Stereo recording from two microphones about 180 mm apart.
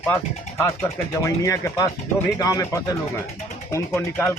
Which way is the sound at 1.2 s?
15° left (ahead or behind).